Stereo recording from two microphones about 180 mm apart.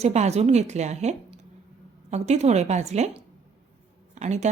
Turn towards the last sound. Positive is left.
turn(degrees=-40)  # may be behind; listen again after turning